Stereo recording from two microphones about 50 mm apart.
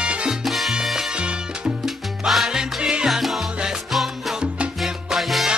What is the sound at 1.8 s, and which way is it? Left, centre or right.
Salsa music, centre.